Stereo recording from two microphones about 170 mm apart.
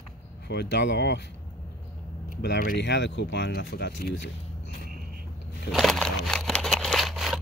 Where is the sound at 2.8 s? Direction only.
90° left; by 4.2 s 70° left (ahead or behind).